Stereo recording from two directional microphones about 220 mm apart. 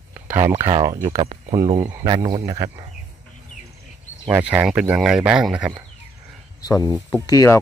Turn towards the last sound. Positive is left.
turn(degrees=15)  # may be behind; listen again after turning